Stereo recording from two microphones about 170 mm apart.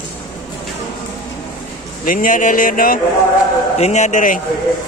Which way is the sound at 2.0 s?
55° left (ahead or behind).